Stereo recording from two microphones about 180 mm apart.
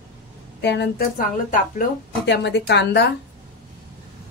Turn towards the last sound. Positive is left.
turn(degrees=70)  # may be behind; listen again after turning